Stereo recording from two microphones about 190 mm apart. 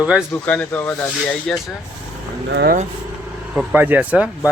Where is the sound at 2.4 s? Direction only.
60° right (ahead or behind).